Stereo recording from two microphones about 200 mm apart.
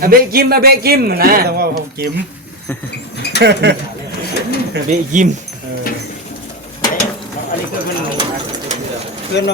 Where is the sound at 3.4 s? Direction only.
55° right (ahead or behind).